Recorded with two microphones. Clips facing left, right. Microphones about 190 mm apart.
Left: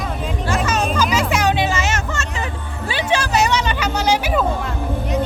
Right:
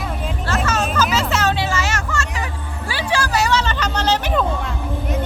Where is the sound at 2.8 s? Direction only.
20° left (ahead or behind).